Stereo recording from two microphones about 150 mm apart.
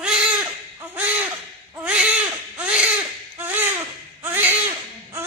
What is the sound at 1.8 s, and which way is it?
Baby cry, 10° right (ahead or behind).